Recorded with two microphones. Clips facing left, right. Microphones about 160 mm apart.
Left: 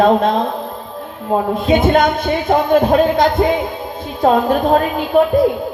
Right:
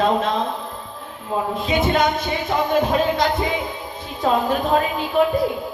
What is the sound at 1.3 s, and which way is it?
Speech, 40° left (ahead or behind).